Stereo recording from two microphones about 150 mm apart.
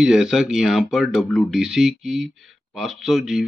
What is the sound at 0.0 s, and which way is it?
Speech, 5° right (ahead or behind).